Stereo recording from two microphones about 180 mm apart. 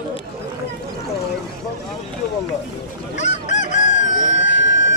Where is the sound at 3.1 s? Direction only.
40° left (ahead or behind).